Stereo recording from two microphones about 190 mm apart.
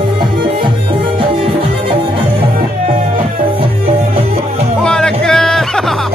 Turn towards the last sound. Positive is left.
turn(degrees=5)  # may be behind; listen again after turning